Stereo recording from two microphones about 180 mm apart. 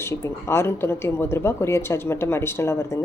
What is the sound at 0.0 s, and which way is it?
Speech, 15° left (ahead or behind).